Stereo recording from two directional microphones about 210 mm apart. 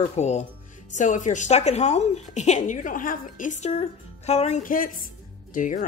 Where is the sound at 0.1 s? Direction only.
30° left (ahead or behind).